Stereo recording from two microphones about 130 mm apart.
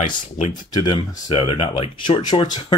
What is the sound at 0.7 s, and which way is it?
Speech, 35° left (ahead or behind).